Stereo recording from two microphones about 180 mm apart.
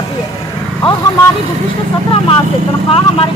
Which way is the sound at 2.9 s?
30° left (ahead or behind).